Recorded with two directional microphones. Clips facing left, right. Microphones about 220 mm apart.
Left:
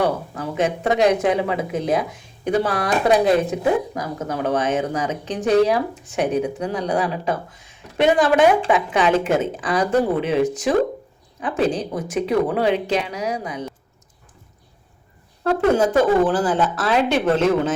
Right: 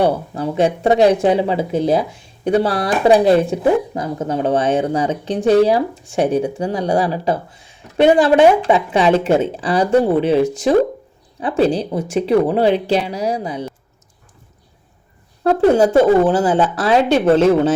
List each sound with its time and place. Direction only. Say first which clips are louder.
0.0 s speech: right 5 dB; 30° right (ahead or behind)
15.6 s speech: right 5 dB; 30° right (ahead or behind)